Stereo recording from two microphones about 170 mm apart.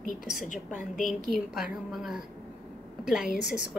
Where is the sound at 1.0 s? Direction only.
Centre (ahead or behind).